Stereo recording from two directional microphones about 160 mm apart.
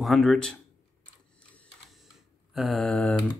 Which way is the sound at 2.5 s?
Centre (ahead or behind).